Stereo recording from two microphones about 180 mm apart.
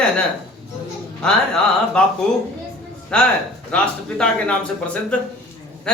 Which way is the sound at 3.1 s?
5° left (ahead or behind).